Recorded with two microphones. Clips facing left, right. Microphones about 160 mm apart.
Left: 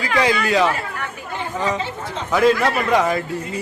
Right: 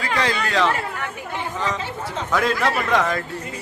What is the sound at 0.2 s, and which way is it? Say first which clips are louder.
A man's voice: left 5 dB; 10° left (ahead or behind).